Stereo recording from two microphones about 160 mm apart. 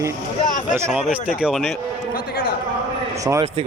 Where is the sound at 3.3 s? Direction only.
15° right (ahead or behind).